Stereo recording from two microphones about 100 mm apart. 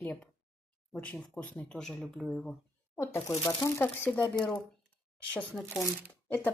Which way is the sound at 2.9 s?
25° left (ahead or behind).